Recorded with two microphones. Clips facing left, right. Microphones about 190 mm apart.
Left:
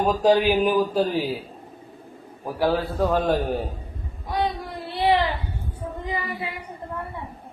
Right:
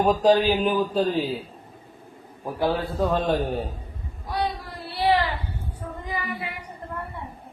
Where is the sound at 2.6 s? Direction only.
5° left (ahead or behind).